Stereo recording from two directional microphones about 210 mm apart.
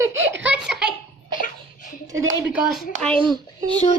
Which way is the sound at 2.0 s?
15° right (ahead or behind).